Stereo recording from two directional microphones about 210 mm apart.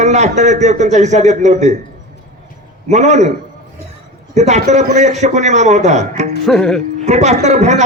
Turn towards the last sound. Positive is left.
turn(degrees=-35)  # may be behind; listen again after turning